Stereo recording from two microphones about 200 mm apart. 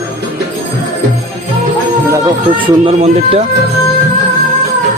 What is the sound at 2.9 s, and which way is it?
Speech, 30° right (ahead or behind).